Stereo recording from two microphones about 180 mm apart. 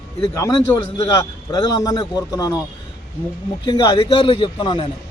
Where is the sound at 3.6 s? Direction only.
25° left (ahead or behind).